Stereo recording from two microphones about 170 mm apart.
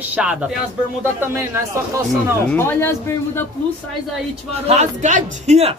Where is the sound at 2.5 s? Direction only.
10° left (ahead or behind).